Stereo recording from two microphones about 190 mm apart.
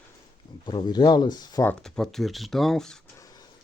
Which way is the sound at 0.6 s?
25° left (ahead or behind).